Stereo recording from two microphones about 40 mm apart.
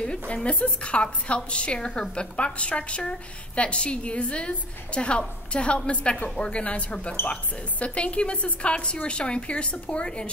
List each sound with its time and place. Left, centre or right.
0.3 s a woman's voice: left